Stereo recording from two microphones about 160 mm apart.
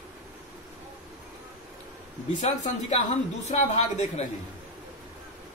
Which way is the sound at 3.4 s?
45° left (ahead or behind).